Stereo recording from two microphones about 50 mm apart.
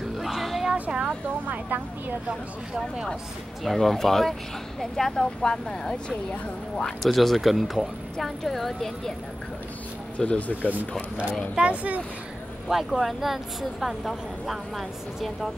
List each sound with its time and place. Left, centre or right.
0.2 s a sound: centre
0.7 s speech: right
3.6 s speech: centre
7.1 s speech: centre
10.1 s speech: left
11.5 s speech: right
12.6 s speech: centre